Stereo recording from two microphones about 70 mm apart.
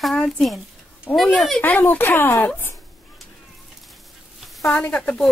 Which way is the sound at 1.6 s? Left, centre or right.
Left.